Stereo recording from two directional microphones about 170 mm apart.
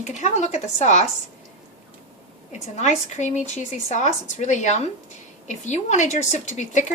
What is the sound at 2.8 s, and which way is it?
A woman's voice, 45° left (ahead or behind).